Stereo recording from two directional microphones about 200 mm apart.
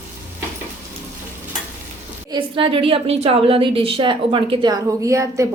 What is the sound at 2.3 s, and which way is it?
A woman's voice, 25° right (ahead or behind).